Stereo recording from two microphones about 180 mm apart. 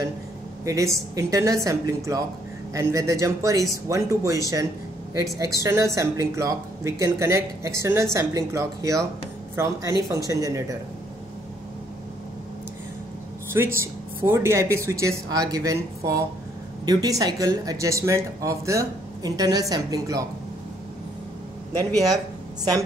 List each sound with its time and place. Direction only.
0.7 s speech: 20° right (ahead or behind)
13.5 s speech: 15° right (ahead or behind)